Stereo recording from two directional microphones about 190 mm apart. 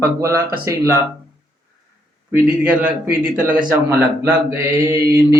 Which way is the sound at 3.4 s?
45° right (ahead or behind).